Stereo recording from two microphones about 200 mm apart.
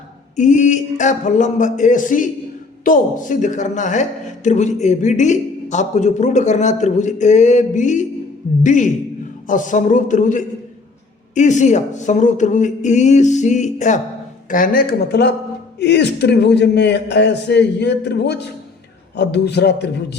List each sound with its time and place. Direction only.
0.3 s a man's voice: 35° left (ahead or behind); by 20.1 s 55° left (ahead or behind)